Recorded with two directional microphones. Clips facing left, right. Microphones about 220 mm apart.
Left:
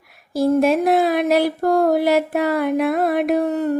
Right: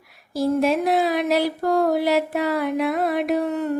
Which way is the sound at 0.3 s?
50° left (ahead or behind).